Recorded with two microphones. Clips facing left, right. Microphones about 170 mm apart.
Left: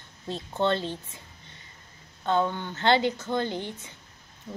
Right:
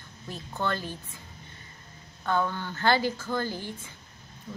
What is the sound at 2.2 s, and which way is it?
Speech, 25° left (ahead or behind).